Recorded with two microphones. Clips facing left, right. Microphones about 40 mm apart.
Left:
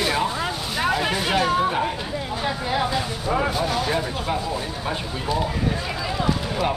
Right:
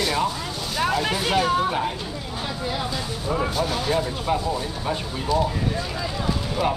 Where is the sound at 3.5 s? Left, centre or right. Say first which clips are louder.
Even; centre.